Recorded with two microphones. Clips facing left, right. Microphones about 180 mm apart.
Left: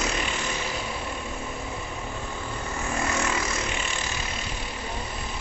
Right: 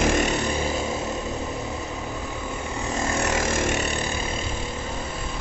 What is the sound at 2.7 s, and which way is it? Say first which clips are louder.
Vehicle: right 1 dB; 20° right (ahead or behind).